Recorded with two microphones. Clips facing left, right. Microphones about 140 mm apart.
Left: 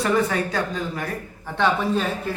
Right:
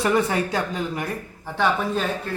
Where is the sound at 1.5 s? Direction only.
Centre (ahead or behind).